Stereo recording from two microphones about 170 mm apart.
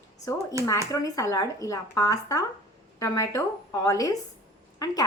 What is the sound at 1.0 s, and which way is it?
A woman's voice, 20° left (ahead or behind).